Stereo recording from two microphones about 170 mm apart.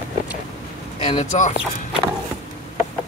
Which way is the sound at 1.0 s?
45° left (ahead or behind).